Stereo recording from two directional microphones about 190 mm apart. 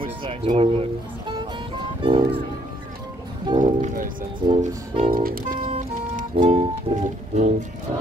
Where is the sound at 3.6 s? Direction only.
45° right (ahead or behind).